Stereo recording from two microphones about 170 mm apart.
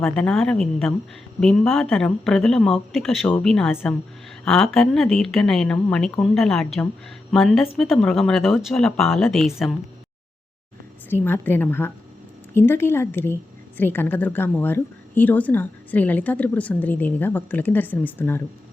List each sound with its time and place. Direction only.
0.0 s speech: 5° left (ahead or behind)
11.1 s a woman's voice: 10° left (ahead or behind)